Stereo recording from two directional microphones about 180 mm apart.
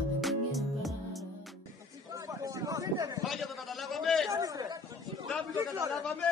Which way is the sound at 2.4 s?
20° right (ahead or behind).